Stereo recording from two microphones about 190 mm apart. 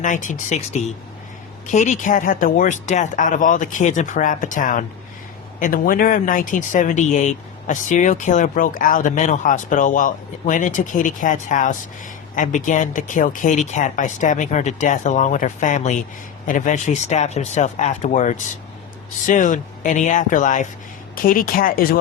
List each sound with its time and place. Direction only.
0.0 s speech: 40° left (ahead or behind)